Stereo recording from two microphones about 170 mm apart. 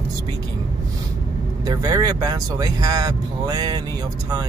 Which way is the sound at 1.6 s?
20° right (ahead or behind).